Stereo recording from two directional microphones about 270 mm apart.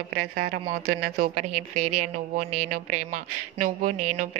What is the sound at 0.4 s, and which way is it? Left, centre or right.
Speech, right.